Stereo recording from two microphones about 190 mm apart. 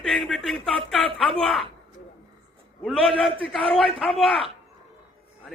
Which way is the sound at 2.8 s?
Centre (ahead or behind).